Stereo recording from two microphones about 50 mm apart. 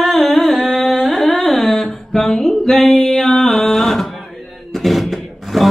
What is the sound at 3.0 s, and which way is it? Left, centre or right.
Music, centre.